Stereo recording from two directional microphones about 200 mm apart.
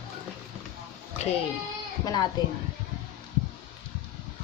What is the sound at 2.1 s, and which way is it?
Speech, 20° left (ahead or behind).